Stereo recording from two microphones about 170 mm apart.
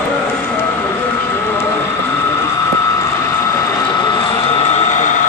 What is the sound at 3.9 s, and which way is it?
Vehicle, 25° left (ahead or behind).